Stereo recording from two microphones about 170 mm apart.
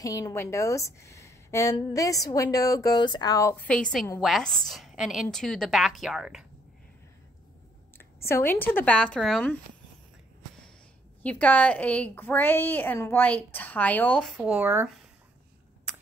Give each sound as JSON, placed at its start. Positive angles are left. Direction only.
{"t": 0.0, "sound": "a woman's voice", "side_deg": 20}
{"t": 8.3, "sound": "a woman's voice", "side_deg": 10}
{"t": 11.2, "sound": "a woman's voice", "side_deg": 10}
{"t": 14.4, "sound": "speech", "side_deg": -10}